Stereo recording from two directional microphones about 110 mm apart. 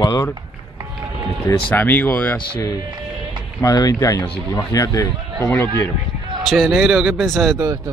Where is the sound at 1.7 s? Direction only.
15° left (ahead or behind).